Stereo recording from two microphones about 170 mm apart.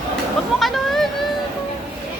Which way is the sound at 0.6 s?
Centre (ahead or behind).